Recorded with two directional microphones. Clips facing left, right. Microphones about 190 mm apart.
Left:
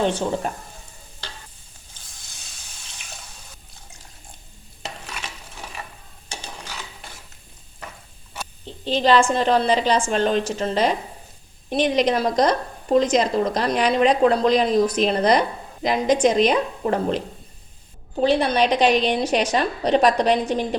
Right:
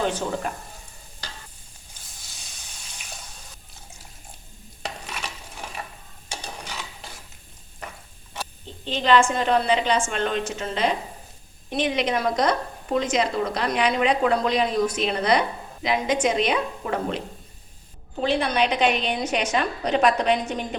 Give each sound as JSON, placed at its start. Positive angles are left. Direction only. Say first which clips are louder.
{"t": 0.1, "sound": "speech", "louder": "left 3 dB", "side_deg": 30}
{"t": 8.6, "sound": "a woman's voice", "louder": "left 5 dB", "side_deg": 35}